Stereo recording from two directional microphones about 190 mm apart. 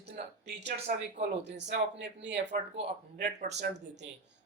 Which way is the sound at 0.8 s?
65° right (ahead or behind).